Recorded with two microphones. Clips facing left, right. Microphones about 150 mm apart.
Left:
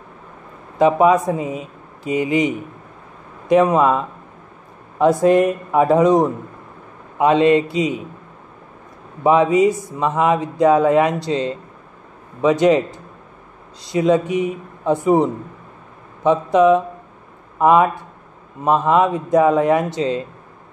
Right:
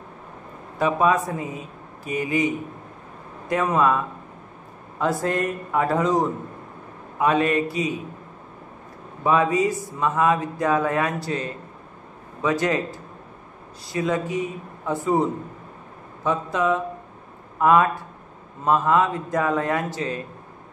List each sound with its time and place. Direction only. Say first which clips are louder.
0.7 s speech: left 7 dB; 20° left (ahead or behind)
9.2 s speech: left 6 dB; 20° left (ahead or behind)
16.3 s speech: left 9 dB; 20° left (ahead or behind)